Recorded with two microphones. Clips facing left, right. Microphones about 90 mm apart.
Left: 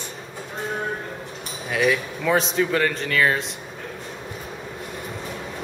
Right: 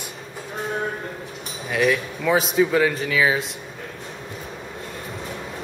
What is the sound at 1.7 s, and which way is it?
A man's voice, centre (ahead or behind).